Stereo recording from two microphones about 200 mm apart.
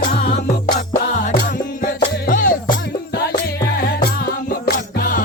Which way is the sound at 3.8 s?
50° left (ahead or behind).